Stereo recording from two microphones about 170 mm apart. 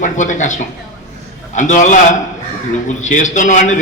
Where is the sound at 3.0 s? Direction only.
45° left (ahead or behind).